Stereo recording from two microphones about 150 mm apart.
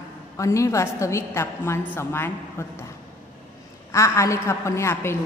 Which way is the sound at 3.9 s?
20° left (ahead or behind).